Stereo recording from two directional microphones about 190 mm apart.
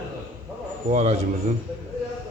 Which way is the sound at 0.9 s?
35° right (ahead or behind).